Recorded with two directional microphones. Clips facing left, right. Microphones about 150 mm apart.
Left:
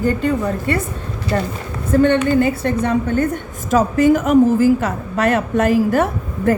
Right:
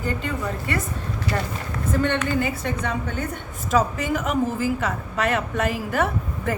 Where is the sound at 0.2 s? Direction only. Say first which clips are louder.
Left 9 dB; 35° left (ahead or behind).